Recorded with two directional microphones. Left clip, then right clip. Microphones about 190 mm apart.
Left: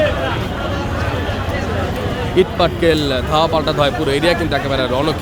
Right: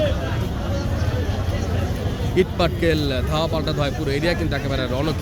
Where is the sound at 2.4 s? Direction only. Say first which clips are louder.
Left 6 dB; centre (ahead or behind).